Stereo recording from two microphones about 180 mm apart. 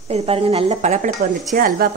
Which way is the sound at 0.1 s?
30° right (ahead or behind).